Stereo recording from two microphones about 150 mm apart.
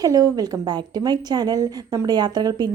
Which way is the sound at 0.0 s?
25° right (ahead or behind).